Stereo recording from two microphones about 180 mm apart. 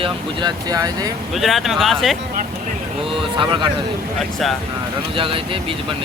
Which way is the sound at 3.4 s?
25° right (ahead or behind).